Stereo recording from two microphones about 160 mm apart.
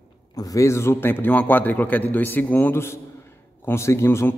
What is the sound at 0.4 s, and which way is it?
A man's voice, 20° left (ahead or behind).